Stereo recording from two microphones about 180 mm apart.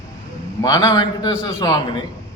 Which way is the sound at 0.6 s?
20° left (ahead or behind).